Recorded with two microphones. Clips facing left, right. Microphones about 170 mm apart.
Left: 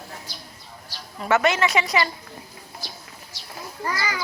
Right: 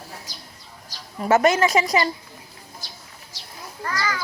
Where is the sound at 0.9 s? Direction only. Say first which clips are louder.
Right 3 dB; 45° right (ahead or behind).